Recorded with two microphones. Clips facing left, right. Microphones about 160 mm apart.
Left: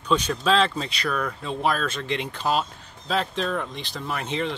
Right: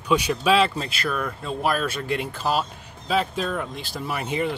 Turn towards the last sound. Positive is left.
turn(degrees=-10)  # may be behind; listen again after turning